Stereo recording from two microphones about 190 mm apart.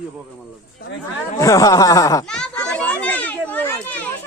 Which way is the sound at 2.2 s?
5° left (ahead or behind).